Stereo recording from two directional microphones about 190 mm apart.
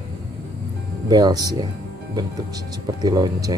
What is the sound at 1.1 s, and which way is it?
Speech, 20° right (ahead or behind).